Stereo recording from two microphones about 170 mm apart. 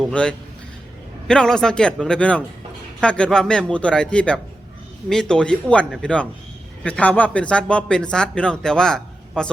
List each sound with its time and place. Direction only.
0.0 s a man's voice: 5° left (ahead or behind)